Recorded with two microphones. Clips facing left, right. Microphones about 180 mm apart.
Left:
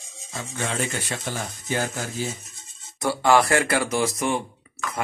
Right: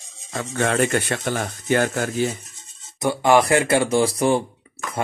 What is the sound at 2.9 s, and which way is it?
Speech, 20° right (ahead or behind).